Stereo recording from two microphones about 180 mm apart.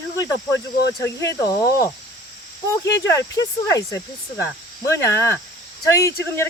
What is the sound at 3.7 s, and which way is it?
Speech, 20° left (ahead or behind).